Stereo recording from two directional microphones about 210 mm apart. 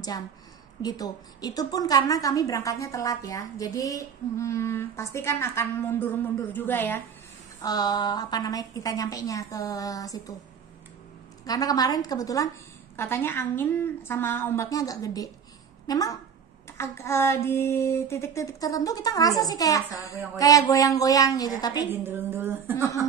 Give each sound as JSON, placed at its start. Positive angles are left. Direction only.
{"t": 0.8, "sound": "a woman's voice", "side_deg": 20}
{"t": 11.4, "sound": "a woman's voice", "side_deg": 20}
{"t": 22.0, "sound": "a sound", "side_deg": -10}